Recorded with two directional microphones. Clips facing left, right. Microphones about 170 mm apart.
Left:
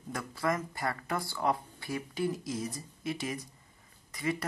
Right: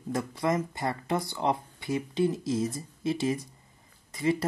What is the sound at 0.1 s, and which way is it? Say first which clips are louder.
Speech: right 5 dB; 20° right (ahead or behind).